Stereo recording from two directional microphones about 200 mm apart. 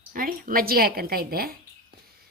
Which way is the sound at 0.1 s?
45° right (ahead or behind).